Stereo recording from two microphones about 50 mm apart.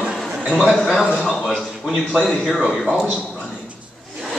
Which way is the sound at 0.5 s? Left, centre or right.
Centre.